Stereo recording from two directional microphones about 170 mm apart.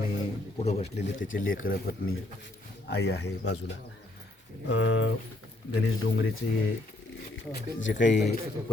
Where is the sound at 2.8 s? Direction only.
80° left.